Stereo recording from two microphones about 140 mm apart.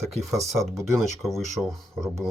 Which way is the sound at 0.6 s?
Centre (ahead or behind).